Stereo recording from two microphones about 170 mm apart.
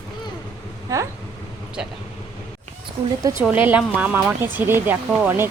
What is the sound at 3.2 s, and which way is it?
Speech, 20° right (ahead or behind).